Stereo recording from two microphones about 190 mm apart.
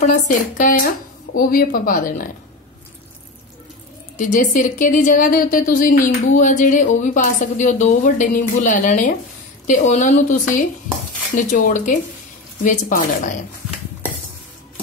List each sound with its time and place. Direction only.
0.0 s speech: 40° left (ahead or behind)
4.2 s speech: 45° left (ahead or behind)